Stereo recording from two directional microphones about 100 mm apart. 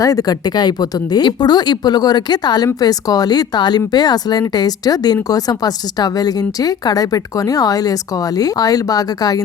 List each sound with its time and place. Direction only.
0.0 s a woman's voice: 35° left (ahead or behind)